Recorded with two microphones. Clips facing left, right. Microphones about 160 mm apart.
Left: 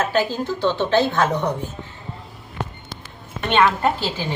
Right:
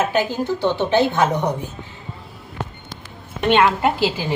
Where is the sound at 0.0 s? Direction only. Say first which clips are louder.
Right 1 dB; 15° right (ahead or behind).